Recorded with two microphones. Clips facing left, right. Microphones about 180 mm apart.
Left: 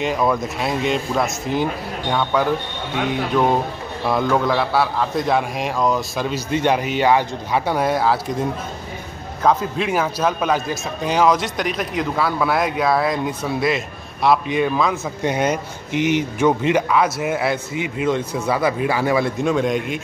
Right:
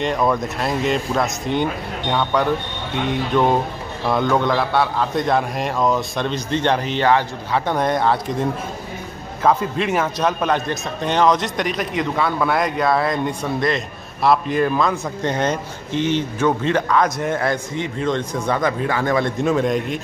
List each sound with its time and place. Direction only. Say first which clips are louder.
0.0 s a man's voice: even; centre (ahead or behind)